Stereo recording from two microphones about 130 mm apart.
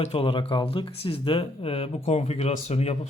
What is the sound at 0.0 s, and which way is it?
Speech, 45° left (ahead or behind).